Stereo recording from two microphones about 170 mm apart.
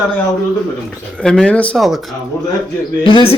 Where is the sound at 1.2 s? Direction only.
5° left (ahead or behind).